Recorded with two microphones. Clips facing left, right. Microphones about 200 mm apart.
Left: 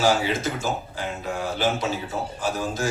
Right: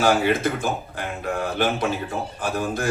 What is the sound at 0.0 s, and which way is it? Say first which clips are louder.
Speech: right 3 dB; 55° right (ahead or behind).